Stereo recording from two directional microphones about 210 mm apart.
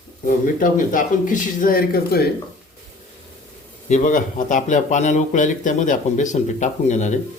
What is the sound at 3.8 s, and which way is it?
Speech, 35° left (ahead or behind).